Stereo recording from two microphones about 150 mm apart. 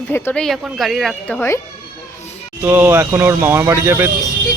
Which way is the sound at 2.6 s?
15° right (ahead or behind).